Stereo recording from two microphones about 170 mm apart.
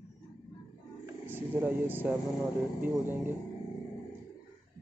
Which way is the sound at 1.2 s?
10° right (ahead or behind).